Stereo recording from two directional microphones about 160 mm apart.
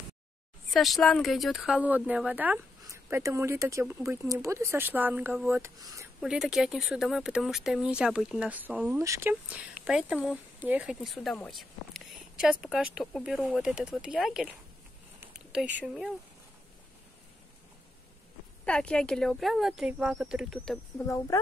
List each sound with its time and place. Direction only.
0.7 s speech: centre (ahead or behind)
5.6 s speech: 20° right (ahead or behind)
6.2 s speech: centre (ahead or behind); by 9.3 s 20° right (ahead or behind)
9.3 s speech: 5° right (ahead or behind)
15.1 s a sound: 5° right (ahead or behind)
15.8 s speech: 5° right (ahead or behind)
18.7 s speech: 5° left (ahead or behind)
20.7 s speech: 20° left (ahead or behind)